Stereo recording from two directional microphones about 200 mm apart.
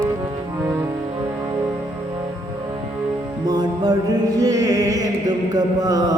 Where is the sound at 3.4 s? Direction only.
20° right (ahead or behind).